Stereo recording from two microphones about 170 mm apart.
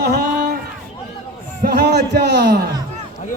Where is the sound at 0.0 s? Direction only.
65° right (ahead or behind).